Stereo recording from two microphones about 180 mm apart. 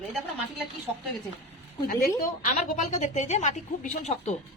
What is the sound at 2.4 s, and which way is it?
A woman's voice, 50° left (ahead or behind).